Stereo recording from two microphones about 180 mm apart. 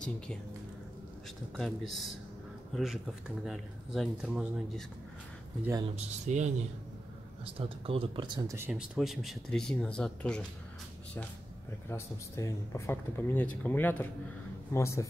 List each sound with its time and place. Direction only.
1.6 s speech: centre (ahead or behind)
5.9 s speech: 40° right (ahead or behind)
7.4 s speech: 30° right (ahead or behind); by 10.4 s 5° left (ahead or behind)
11.9 s speech: 15° left (ahead or behind)